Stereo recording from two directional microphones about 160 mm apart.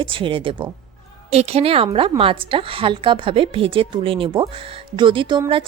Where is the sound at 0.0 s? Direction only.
35° right (ahead or behind).